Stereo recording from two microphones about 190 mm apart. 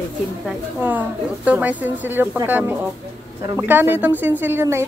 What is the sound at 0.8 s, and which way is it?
Speech, 10° right (ahead or behind).